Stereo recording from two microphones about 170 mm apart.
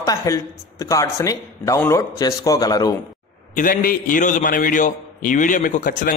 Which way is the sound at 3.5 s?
55° left (ahead or behind).